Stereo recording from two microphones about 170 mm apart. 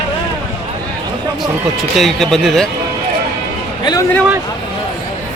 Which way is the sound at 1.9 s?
Centre (ahead or behind).